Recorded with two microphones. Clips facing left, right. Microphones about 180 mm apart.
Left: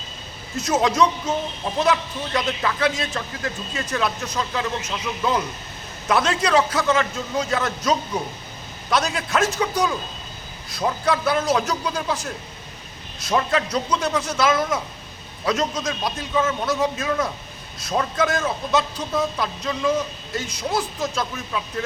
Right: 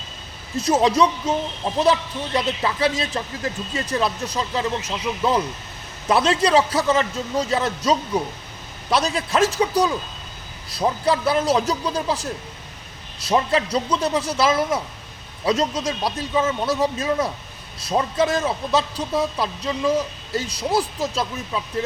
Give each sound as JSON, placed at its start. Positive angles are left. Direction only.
{"t": 0.5, "sound": "a man's voice", "side_deg": -35}
{"t": 11.0, "sound": "a man's voice", "side_deg": -35}
{"t": 16.3, "sound": "speech", "side_deg": -10}
{"t": 16.6, "sound": "a man's voice", "side_deg": -35}